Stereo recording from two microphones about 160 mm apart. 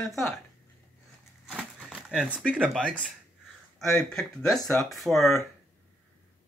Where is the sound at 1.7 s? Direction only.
5° right (ahead or behind).